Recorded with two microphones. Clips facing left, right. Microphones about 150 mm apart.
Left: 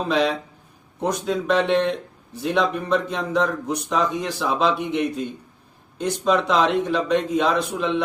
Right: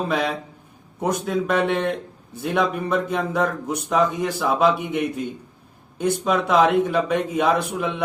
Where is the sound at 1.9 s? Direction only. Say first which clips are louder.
Even; 50° right (ahead or behind).